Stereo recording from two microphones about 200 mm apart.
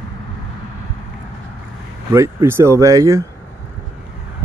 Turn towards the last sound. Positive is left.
turn(degrees=-15)  # may be behind; listen again after turning